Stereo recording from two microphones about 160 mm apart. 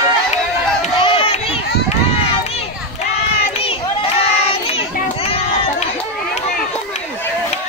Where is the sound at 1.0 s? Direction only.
35° left (ahead or behind).